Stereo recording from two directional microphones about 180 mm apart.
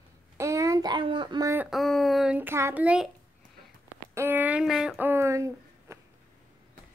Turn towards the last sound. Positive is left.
turn(degrees=-15)  # may be behind; listen again after turning